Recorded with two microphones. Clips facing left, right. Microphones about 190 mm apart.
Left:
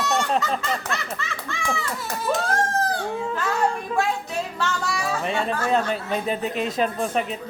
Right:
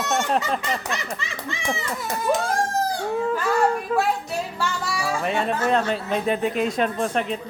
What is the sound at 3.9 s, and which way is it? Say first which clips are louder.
Speech: right 2 dB; 5° right (ahead or behind).